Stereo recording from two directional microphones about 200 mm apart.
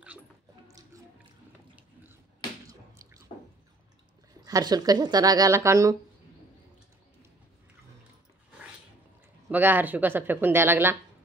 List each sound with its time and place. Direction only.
0.7 s music: 15° right (ahead or behind)
2.7 s squish: 15° right (ahead or behind)
4.3 s speech: 20° right (ahead or behind)
9.5 s speech: 10° right (ahead or behind)